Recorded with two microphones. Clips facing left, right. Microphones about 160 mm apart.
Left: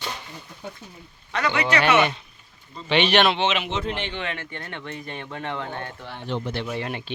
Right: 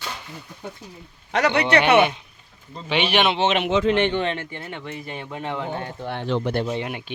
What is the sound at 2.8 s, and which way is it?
Speech, 10° right (ahead or behind).